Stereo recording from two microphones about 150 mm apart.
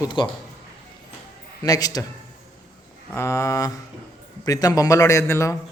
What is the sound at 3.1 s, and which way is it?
A man's voice, 20° left (ahead or behind).